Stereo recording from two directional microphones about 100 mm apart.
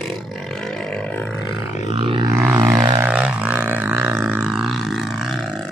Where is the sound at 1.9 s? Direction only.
60° right (ahead or behind).